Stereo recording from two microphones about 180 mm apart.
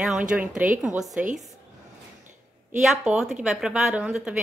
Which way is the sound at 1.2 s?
45° right (ahead or behind).